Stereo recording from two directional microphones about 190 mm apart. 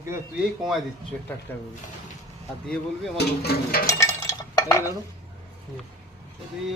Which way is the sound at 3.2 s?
55° left (ahead or behind).